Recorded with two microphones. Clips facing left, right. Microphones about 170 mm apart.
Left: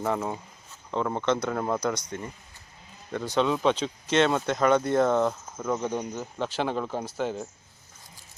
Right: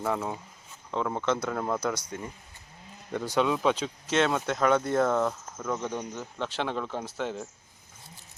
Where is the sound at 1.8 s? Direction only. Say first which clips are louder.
Left 2 dB; 5° right (ahead or behind).